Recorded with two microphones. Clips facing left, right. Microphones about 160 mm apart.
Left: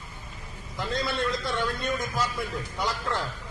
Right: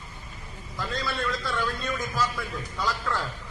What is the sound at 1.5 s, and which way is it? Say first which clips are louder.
Speech: left 1 dB; 25° left (ahead or behind).